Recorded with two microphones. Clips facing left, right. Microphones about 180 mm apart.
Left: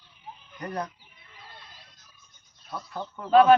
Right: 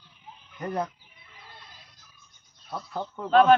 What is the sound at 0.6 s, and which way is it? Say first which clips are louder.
Speech: right 3 dB; 25° right (ahead or behind).